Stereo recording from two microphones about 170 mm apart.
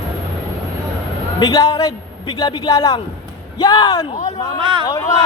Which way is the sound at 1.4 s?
25° left (ahead or behind).